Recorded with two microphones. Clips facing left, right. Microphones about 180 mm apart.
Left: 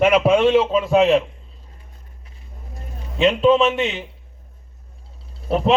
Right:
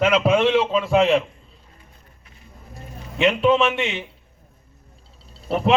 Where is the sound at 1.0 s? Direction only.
Centre (ahead or behind).